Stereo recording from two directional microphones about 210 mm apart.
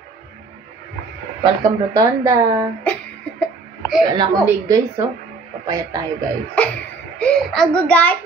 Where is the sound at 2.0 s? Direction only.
15° right (ahead or behind).